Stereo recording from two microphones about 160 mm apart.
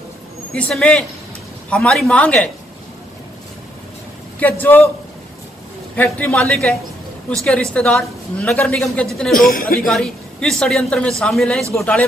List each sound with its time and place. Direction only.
0.6 s a woman's voice: 5° left (ahead or behind)
4.4 s speech: 10° left (ahead or behind)
5.9 s a woman's voice: 10° left (ahead or behind)
9.3 s speech: 60° left (ahead or behind)
9.8 s a woman's voice: centre (ahead or behind)